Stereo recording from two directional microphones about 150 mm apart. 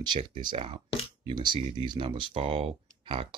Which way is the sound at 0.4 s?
30° right (ahead or behind).